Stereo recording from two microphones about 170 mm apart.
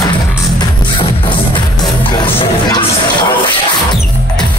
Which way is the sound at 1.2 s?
30° left (ahead or behind).